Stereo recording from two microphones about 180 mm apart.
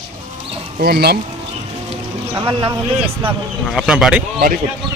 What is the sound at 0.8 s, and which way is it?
Speech, 60° right (ahead or behind).